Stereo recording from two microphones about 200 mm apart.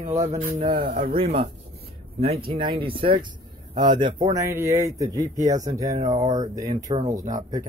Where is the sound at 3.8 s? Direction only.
20° right (ahead or behind).